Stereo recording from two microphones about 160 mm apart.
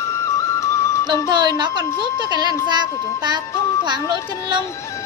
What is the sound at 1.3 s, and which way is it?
A woman's voice, 25° right (ahead or behind).